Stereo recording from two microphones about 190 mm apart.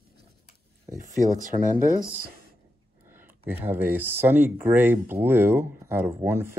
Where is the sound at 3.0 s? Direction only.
10° right (ahead or behind).